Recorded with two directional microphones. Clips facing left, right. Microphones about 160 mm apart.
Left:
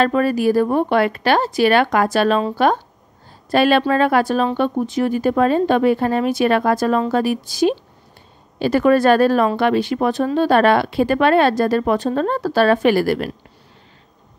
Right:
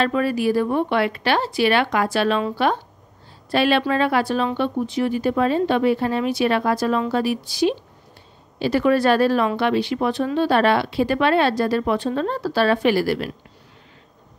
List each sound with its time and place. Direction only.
0.0 s speech: 45° left (ahead or behind)